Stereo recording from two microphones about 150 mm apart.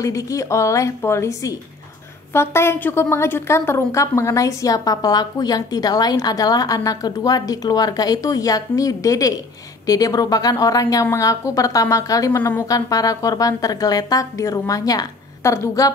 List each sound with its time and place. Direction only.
0.0 s a woman's voice: 20° left (ahead or behind)